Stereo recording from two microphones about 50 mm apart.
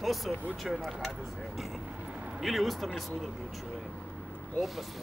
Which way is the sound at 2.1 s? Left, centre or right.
Right.